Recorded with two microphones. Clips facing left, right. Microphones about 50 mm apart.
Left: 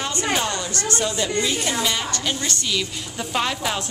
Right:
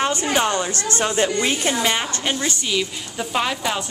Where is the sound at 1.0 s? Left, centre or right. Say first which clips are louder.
Right 5 dB; right.